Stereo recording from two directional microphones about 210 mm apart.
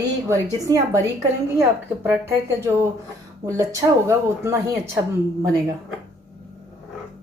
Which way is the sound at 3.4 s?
15° right (ahead or behind).